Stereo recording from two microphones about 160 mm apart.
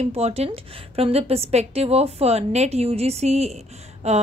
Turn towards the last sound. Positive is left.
turn(degrees=-45)  # may be behind; listen again after turning